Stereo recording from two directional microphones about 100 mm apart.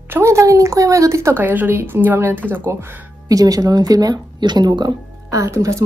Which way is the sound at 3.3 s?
35° right (ahead or behind).